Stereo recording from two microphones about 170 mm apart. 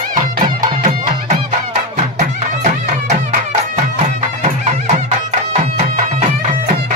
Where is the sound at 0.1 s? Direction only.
50° right (ahead or behind).